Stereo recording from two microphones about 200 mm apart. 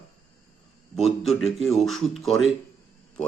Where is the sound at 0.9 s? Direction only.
Centre (ahead or behind).